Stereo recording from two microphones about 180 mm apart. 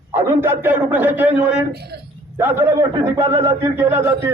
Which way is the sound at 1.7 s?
65° right (ahead or behind).